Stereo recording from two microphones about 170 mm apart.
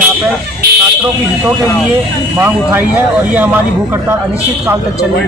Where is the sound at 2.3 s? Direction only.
10° right (ahead or behind).